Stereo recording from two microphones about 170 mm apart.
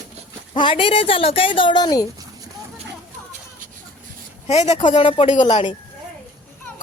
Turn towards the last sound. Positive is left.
turn(degrees=30)  # may be behind; listen again after turning